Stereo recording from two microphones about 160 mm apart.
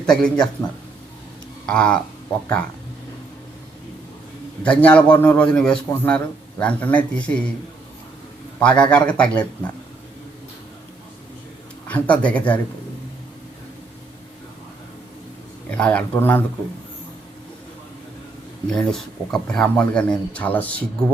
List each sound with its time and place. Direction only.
0.0 s speech: 5° left (ahead or behind)
1.6 s speech: 5° left (ahead or behind)
4.6 s a man's voice: 10° left (ahead or behind)
8.5 s a man's voice: 5° left (ahead or behind)
11.9 s a man's voice: 10° left (ahead or behind)
15.7 s a man's voice: 5° left (ahead or behind)
18.7 s a man's voice: 5° left (ahead or behind)